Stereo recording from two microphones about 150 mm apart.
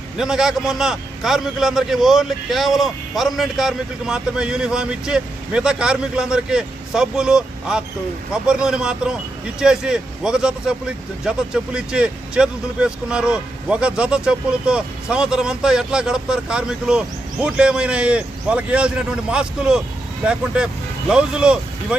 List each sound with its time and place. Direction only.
0.2 s a man's voice: 5° right (ahead or behind)